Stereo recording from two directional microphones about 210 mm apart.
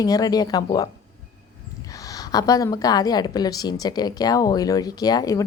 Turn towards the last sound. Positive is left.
turn(degrees=15)  # may be behind; listen again after turning